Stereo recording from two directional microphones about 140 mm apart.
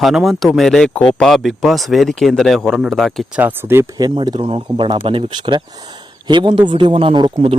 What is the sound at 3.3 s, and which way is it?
Speech, 15° right (ahead or behind).